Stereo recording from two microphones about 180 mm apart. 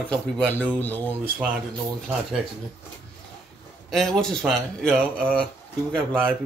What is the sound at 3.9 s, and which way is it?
Speech, 5° left (ahead or behind).